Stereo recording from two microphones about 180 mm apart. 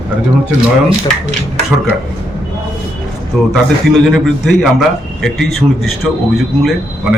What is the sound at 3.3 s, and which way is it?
A man's voice, centre (ahead or behind).